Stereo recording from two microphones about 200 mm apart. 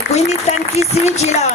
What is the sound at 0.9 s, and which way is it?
Speech, 35° left (ahead or behind).